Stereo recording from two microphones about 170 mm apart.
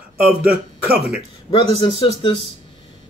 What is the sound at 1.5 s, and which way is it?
Speech, 30° left (ahead or behind).